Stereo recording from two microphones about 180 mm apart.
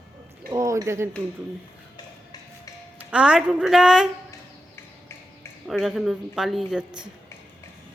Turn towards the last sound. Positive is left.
turn(degrees=0)  # may be behind; listen again after turning